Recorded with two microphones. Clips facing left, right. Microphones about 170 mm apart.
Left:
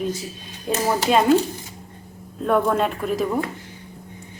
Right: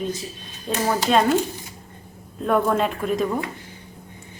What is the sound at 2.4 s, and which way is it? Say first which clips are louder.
A woman's voice: left 1 dB; centre (ahead or behind).